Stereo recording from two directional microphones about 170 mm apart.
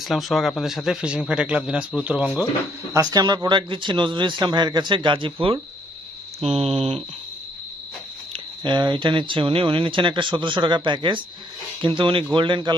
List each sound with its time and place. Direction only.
0.0 s speech: centre (ahead or behind)
2.9 s speech: 20° right (ahead or behind); by 7.0 s 35° right (ahead or behind)
8.6 s speech: 25° right (ahead or behind)